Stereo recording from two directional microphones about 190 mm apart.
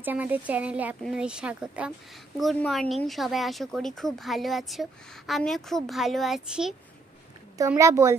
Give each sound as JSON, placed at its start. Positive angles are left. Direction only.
{"t": 0.0, "sound": "speech", "side_deg": -10}
{"t": 7.5, "sound": "speech", "side_deg": -15}